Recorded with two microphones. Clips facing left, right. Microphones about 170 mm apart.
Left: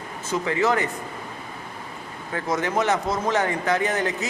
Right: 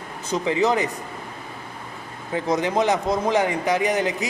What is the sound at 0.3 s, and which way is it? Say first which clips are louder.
Speech: right 2 dB; 20° right (ahead or behind).